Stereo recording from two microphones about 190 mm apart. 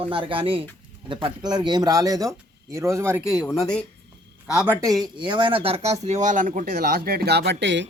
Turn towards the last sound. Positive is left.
turn(degrees=-70)  # may be behind; listen again after turning